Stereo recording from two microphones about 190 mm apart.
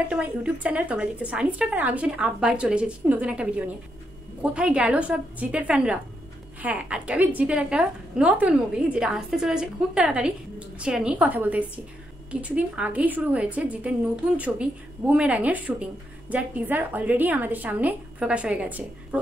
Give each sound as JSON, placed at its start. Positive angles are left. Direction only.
{"t": 0.1, "sound": "a woman's voice", "side_deg": -5}